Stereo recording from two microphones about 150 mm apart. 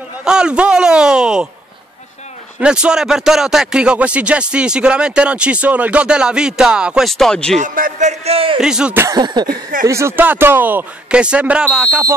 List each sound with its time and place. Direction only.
0.2 s a man's voice: 5° right (ahead or behind)
2.6 s speech: 5° right (ahead or behind)
7.5 s a man's voice: 60° right (ahead or behind); by 8.5 s 40° right (ahead or behind)
8.5 s a man's voice: 5° right (ahead or behind)
9.0 s a sound: 30° right (ahead or behind)
9.5 s speech: 60° right (ahead or behind)
9.8 s speech: 20° right (ahead or behind)